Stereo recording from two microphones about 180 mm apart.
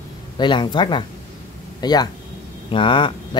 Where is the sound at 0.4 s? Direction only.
25° left (ahead or behind).